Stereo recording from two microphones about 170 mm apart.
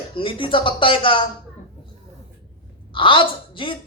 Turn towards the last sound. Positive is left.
turn(degrees=30)  # may be behind; listen again after turning